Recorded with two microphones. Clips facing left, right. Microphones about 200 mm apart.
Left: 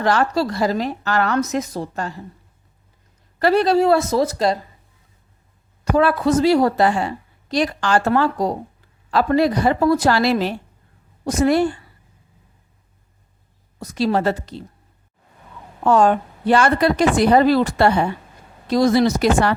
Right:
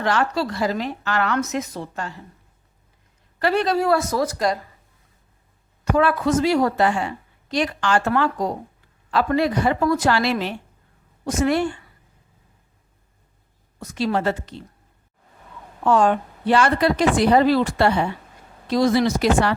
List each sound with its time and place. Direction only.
0.0 s a woman's voice: 40° left (ahead or behind)
3.3 s a woman's voice: 35° left (ahead or behind)
5.8 s a woman's voice: 35° left (ahead or behind)
13.7 s a woman's voice: 35° left (ahead or behind)
15.8 s a woman's voice: 40° left (ahead or behind)